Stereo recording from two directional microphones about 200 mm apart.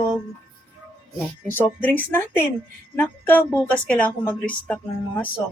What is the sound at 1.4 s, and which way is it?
Speech, 10° left (ahead or behind).